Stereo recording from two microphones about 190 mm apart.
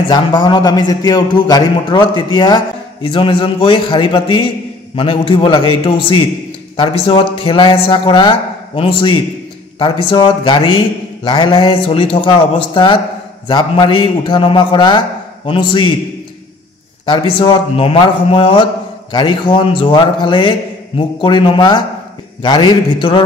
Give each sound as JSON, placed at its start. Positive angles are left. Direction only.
{"t": 0.1, "sound": "a man's voice", "side_deg": 25}
{"t": 17.0, "sound": "a man's voice", "side_deg": 25}